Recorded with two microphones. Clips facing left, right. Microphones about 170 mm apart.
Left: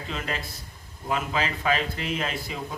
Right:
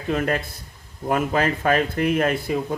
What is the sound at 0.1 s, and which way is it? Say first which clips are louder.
A man's voice: right 11 dB; 55° right (ahead or behind).